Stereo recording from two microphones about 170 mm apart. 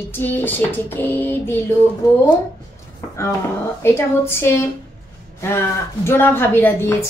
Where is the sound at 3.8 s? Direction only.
15° left (ahead or behind).